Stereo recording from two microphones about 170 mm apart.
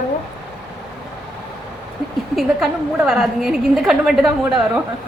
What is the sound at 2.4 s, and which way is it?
A woman's voice, centre (ahead or behind).